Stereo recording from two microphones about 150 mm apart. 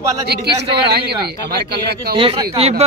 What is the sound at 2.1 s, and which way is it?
Speech, 35° right (ahead or behind).